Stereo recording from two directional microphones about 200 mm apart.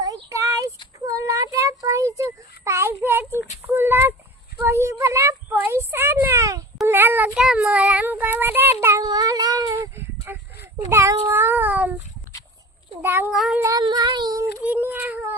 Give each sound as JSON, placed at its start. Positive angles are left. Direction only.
{"t": 0.0, "sound": "a sound", "side_deg": -15}
{"t": 0.9, "sound": "child singing", "side_deg": -15}
{"t": 3.7, "sound": "a sound", "side_deg": -10}
{"t": 6.8, "sound": "child singing", "side_deg": -10}
{"t": 11.3, "sound": "cat", "side_deg": -10}
{"t": 13.0, "sound": "cat", "side_deg": -10}
{"t": 13.3, "sound": "child singing", "side_deg": 0}
{"t": 13.6, "sound": "child singing", "side_deg": -20}
{"t": 14.6, "sound": "a sound", "side_deg": -5}